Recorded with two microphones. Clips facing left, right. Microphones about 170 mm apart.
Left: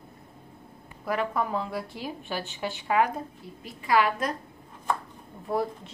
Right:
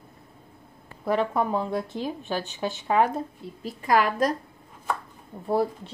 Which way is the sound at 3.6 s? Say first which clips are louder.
Right 1 dB; 45° right (ahead or behind).